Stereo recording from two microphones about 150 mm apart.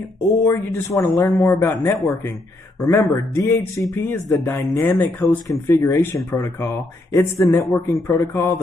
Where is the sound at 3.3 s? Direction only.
20° left (ahead or behind).